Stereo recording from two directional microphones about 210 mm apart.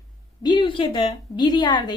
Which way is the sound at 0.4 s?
20° left (ahead or behind).